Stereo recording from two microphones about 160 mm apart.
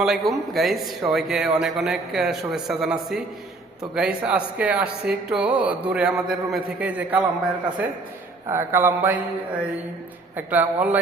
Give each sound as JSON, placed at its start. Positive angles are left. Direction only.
{"t": 0.0, "sound": "a man's voice", "side_deg": 0}
{"t": 8.4, "sound": "speech", "side_deg": -15}
{"t": 10.3, "sound": "speech", "side_deg": -10}